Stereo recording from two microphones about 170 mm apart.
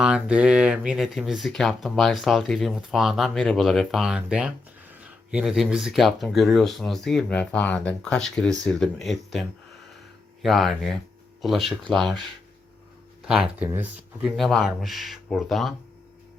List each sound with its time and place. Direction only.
0.0 s speech: 5° right (ahead or behind)
13.2 s speech: 5° right (ahead or behind)